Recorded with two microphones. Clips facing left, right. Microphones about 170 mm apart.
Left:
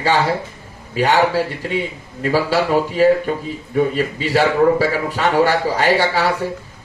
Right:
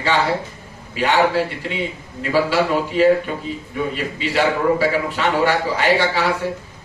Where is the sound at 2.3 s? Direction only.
40° left (ahead or behind).